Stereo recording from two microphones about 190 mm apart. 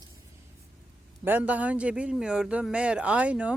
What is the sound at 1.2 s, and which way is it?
A man's voice, 10° right (ahead or behind).